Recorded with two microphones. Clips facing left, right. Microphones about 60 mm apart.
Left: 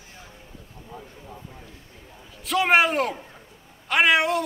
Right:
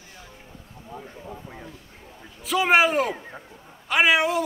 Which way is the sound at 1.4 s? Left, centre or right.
Right.